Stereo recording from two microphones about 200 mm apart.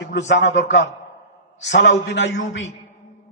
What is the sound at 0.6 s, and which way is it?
Speech, 65° left (ahead or behind).